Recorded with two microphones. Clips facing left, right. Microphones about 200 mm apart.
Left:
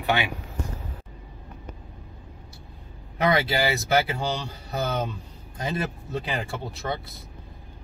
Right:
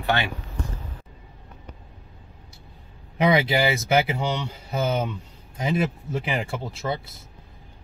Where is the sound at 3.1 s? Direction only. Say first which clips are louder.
Right 3 dB; 15° right (ahead or behind).